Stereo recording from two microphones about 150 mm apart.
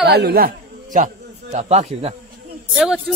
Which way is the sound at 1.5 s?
45° right (ahead or behind).